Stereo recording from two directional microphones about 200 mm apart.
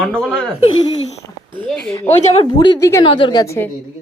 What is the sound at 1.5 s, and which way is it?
Speech, 10° left (ahead or behind).